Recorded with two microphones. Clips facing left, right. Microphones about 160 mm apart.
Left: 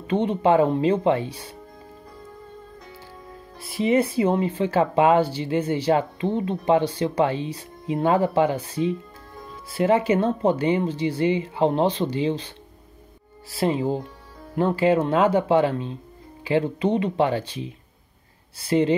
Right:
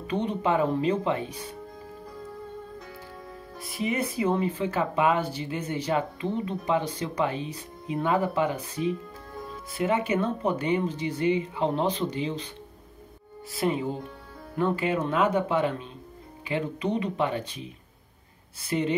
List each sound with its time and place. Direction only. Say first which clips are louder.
0.0 s speech: left 6 dB; 25° left (ahead or behind)
3.5 s speech: left 8 dB; 30° left (ahead or behind)
18.7 s speech: left 7 dB; 30° left (ahead or behind)